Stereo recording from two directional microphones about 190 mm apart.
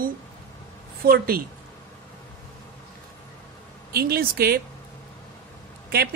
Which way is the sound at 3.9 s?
55° right (ahead or behind).